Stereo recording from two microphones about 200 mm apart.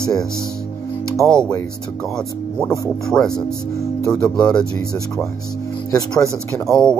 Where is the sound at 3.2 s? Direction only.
20° left (ahead or behind).